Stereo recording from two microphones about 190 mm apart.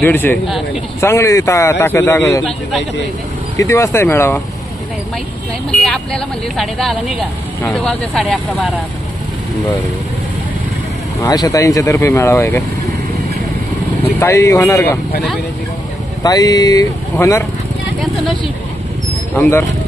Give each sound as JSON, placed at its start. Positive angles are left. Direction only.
{"t": 0.0, "sound": "speech", "side_deg": 10}
{"t": 3.5, "sound": "speech", "side_deg": 15}
{"t": 5.7, "sound": "speech", "side_deg": 5}
{"t": 11.1, "sound": "speech", "side_deg": 20}
{"t": 14.2, "sound": "speech", "side_deg": 15}
{"t": 16.2, "sound": "speech", "side_deg": 20}